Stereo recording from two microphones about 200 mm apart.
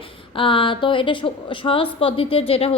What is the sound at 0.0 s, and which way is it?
A woman's voice, 25° left (ahead or behind).